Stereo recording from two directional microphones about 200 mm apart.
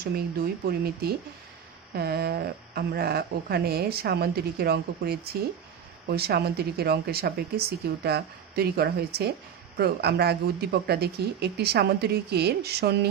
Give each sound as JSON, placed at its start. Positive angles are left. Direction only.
{"t": 0.0, "sound": "speech", "side_deg": -50}